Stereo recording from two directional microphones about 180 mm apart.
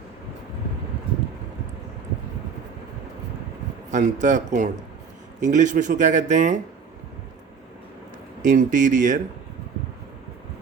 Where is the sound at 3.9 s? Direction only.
45° right (ahead or behind).